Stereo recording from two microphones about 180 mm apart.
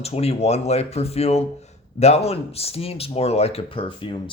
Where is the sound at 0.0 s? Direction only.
35° left (ahead or behind).